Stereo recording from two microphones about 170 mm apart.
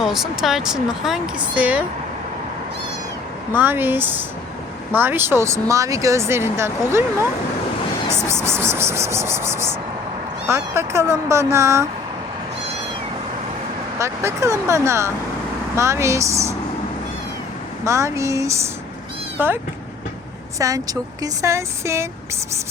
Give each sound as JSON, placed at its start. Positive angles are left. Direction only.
{"t": 0.0, "sound": "speech", "side_deg": 0}
{"t": 3.5, "sound": "speech", "side_deg": -10}
{"t": 8.3, "sound": "speech", "side_deg": -15}
{"t": 14.0, "sound": "speech", "side_deg": -15}
{"t": 17.8, "sound": "speech", "side_deg": -15}
{"t": 20.6, "sound": "speech", "side_deg": -20}